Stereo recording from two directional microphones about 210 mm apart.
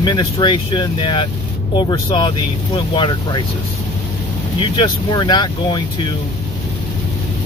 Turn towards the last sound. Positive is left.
turn(degrees=20)  # may be behind; listen again after turning